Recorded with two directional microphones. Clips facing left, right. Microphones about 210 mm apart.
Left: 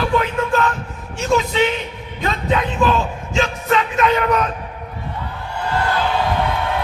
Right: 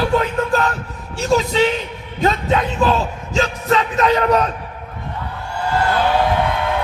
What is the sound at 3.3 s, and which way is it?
Speech, 35° right (ahead or behind).